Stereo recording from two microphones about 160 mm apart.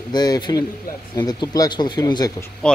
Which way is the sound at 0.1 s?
25° left (ahead or behind).